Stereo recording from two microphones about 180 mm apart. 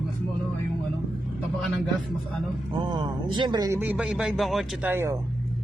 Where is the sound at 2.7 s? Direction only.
25° right (ahead or behind).